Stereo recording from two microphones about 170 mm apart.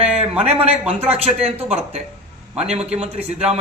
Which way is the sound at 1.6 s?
40° right (ahead or behind).